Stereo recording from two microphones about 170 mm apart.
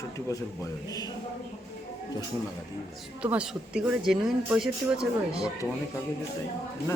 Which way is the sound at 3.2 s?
5° right (ahead or behind).